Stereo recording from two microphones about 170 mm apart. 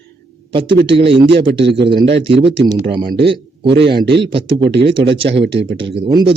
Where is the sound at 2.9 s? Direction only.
30° right (ahead or behind).